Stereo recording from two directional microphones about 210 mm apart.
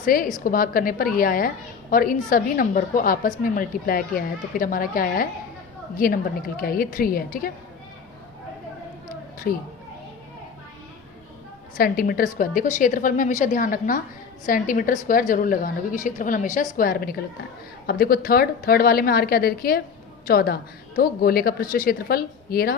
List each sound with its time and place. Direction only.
0.0 s a woman's voice: 40° left (ahead or behind)
9.5 s a woman's voice: 40° left (ahead or behind)
11.8 s a woman's voice: 45° left (ahead or behind)